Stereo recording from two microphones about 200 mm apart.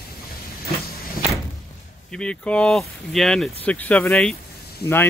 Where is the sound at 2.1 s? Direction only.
5° left (ahead or behind).